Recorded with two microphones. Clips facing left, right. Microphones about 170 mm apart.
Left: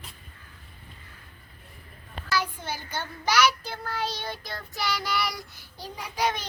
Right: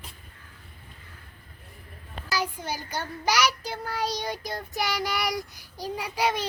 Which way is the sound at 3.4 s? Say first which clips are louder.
Left 2 dB; 35° right (ahead or behind).